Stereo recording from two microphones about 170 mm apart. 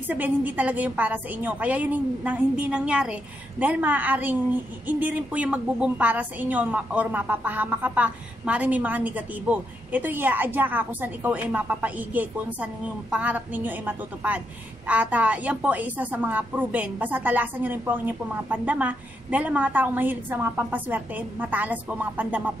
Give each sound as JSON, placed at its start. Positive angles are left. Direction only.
{"t": 0.0, "sound": "a woman's voice", "side_deg": -10}